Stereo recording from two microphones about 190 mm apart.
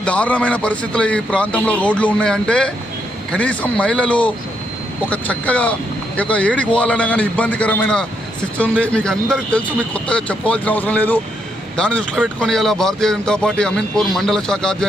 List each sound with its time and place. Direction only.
0.0 s a man's voice: 5° left (ahead or behind)